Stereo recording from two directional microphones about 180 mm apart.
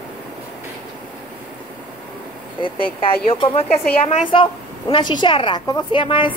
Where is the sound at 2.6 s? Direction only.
30° left (ahead or behind).